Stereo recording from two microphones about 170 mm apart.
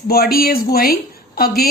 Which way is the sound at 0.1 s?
65° left (ahead or behind).